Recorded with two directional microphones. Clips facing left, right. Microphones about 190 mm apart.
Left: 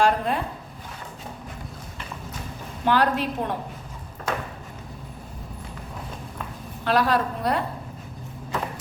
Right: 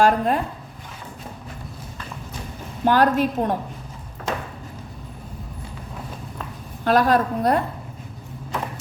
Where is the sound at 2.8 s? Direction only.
45° right (ahead or behind).